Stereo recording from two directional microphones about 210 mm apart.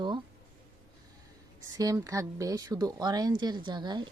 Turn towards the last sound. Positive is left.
turn(degrees=-20)  # may be behind; listen again after turning